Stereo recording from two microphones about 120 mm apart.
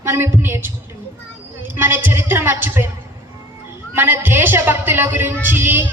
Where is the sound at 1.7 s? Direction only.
15° right (ahead or behind).